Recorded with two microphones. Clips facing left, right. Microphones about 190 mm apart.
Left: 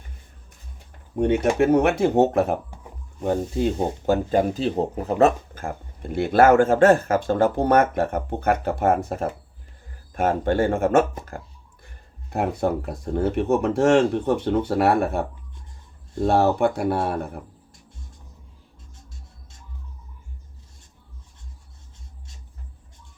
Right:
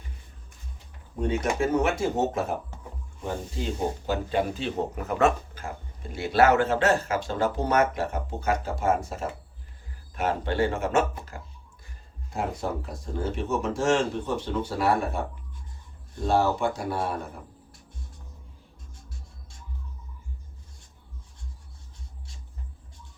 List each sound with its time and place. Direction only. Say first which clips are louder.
1.1 s speech: left 7 dB; 65° left (ahead or behind); by 5.3 s 30° left (ahead or behind)
5.5 s speech: left 6 dB; 55° left (ahead or behind)
12.3 s speech: left 7 dB; 60° left (ahead or behind)
16.2 s speech: left 5 dB; 60° left (ahead or behind)